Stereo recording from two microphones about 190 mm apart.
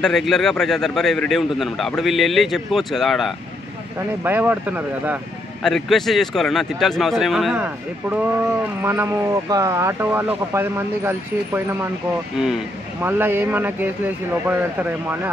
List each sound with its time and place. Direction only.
0.0 s a man's voice: centre (ahead or behind)
4.2 s speech: 10° right (ahead or behind)
5.6 s a man's voice: centre (ahead or behind)
13.0 s speech: 10° right (ahead or behind)